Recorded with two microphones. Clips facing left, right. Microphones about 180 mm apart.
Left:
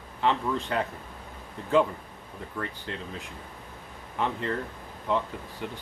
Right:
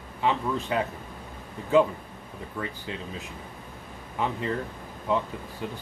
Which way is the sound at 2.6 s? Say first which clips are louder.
Right 1 dB; 5° right (ahead or behind).